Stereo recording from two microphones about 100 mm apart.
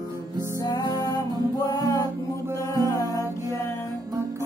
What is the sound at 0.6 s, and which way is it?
Music, 40° left (ahead or behind).